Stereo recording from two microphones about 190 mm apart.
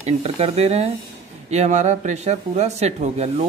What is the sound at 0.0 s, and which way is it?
Speech, 30° right (ahead or behind).